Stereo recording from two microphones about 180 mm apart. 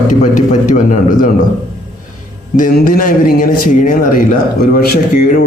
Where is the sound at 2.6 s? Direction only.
50° left (ahead or behind).